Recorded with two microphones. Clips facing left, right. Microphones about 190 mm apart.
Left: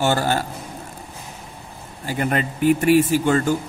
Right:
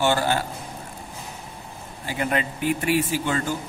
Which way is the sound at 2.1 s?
50° left (ahead or behind).